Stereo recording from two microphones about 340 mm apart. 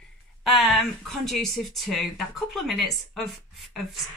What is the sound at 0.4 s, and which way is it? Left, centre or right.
Speech, centre.